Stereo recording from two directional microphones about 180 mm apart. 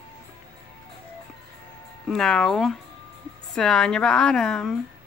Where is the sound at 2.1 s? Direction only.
5° left (ahead or behind).